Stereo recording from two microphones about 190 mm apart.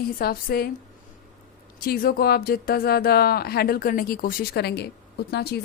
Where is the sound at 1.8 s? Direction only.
50° left (ahead or behind).